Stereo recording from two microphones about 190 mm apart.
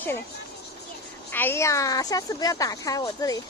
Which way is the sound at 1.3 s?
10° left (ahead or behind).